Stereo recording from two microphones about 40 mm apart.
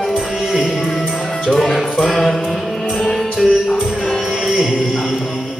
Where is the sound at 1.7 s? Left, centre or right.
Centre.